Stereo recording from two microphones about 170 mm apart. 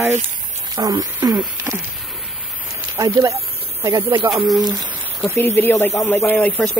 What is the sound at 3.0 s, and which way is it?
Speech, 20° right (ahead or behind).